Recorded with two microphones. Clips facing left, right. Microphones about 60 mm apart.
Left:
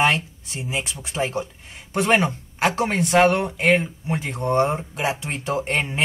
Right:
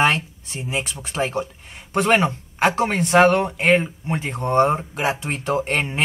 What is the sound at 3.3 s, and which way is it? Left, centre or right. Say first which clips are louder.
Speech: right 2 dB; right.